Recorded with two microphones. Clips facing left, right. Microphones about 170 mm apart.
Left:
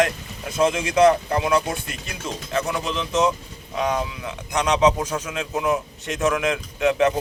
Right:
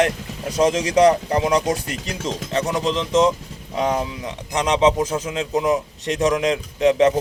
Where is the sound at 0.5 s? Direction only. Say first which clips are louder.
Right 3 dB; 40° right (ahead or behind).